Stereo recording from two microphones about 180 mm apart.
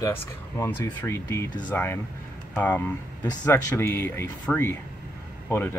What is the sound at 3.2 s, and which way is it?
Speech, 20° left (ahead or behind).